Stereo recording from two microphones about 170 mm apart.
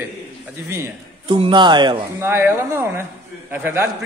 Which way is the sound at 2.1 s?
15° right (ahead or behind).